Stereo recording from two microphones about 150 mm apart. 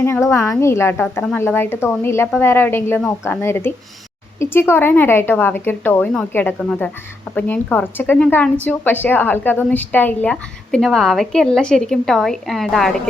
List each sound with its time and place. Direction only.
0.0 s a woman's voice: 15° left (ahead or behind); by 13.0 s centre (ahead or behind)